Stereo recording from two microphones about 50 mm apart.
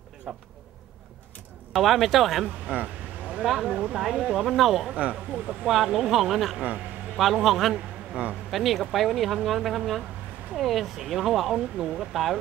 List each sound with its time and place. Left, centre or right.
0.3 s speech: centre
1.7 s speech: centre
2.6 s a sound: right
3.4 s speech: centre
5.1 s speech: centre
5.7 s a man's voice: centre